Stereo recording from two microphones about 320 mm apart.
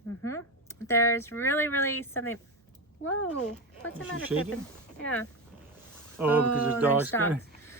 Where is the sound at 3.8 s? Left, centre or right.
Left.